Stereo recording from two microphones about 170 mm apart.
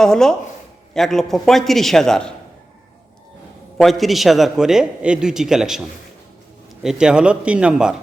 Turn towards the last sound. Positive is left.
turn(degrees=-5)  # may be behind; listen again after turning